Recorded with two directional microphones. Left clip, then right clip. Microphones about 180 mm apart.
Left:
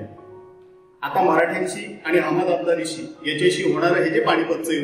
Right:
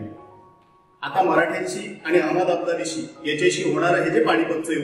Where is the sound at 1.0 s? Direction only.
20° left (ahead or behind).